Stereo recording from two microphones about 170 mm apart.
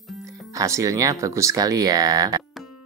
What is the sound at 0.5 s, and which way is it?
Speech, 20° right (ahead or behind).